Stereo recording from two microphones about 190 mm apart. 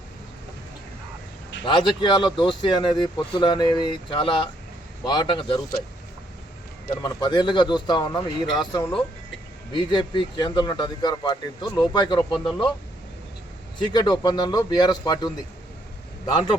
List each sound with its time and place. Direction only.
1.6 s speech: 25° left (ahead or behind)
6.9 s speech: 20° left (ahead or behind)
13.7 s speech: 20° left (ahead or behind)